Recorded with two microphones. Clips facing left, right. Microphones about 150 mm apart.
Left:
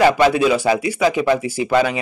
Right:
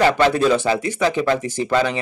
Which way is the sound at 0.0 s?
10° left (ahead or behind).